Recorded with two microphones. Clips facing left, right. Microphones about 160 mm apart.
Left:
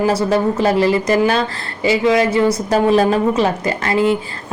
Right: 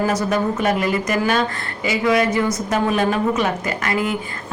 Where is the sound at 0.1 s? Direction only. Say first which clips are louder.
Left 4 dB; 30° left (ahead or behind).